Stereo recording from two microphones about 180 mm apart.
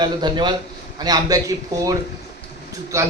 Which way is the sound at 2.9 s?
15° right (ahead or behind).